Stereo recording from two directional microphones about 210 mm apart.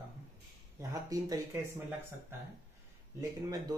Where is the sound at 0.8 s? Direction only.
15° right (ahead or behind).